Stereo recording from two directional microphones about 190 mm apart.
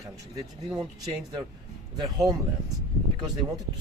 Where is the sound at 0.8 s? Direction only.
20° right (ahead or behind).